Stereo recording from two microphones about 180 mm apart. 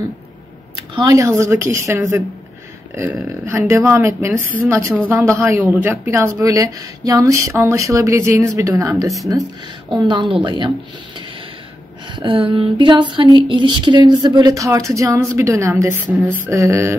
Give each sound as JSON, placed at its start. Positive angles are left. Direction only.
{"t": 0.7, "sound": "speech", "side_deg": -20}
{"t": 12.2, "sound": "speech", "side_deg": -30}